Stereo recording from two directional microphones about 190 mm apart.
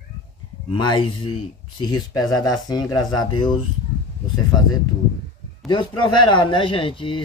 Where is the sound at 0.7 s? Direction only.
25° left (ahead or behind).